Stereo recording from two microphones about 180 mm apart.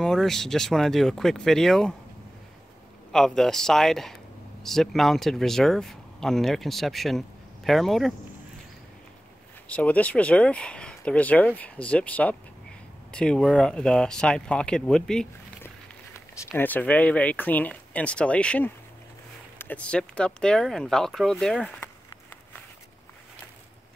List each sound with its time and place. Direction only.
0.0 s speech: centre (ahead or behind)
3.1 s speech: 5° left (ahead or behind)
9.7 s speech: 5° left (ahead or behind)